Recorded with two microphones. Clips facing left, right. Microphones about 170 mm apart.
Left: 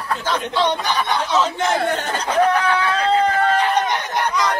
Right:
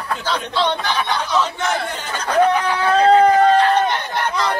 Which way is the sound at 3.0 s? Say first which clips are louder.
Right 7 dB; 40° right (ahead or behind).